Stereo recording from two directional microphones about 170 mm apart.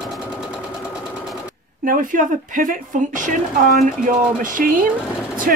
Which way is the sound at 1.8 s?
50° right (ahead or behind).